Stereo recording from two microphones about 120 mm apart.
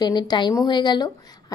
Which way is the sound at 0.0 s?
35° left (ahead or behind).